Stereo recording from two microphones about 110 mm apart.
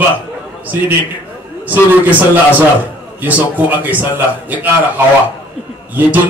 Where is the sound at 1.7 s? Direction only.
15° right (ahead or behind).